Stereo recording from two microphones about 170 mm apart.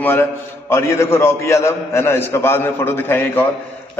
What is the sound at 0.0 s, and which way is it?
A man's voice, 15° left (ahead or behind).